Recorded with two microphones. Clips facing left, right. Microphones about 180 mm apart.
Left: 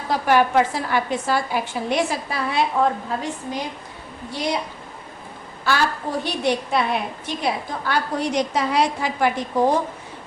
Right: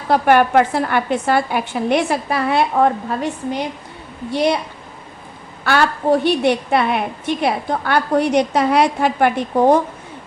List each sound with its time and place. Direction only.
0.1 s a woman's voice: 60° right (ahead or behind)
5.6 s a woman's voice: 65° right (ahead or behind)